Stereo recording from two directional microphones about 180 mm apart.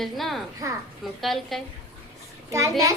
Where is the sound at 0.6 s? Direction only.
20° right (ahead or behind).